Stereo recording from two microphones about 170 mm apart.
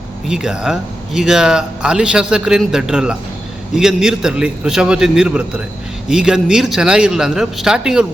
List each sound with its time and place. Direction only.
0.3 s speech: 5° right (ahead or behind)